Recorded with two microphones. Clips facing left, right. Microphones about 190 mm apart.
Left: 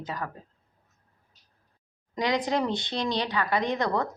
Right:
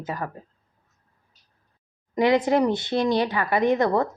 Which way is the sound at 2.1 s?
55° right (ahead or behind).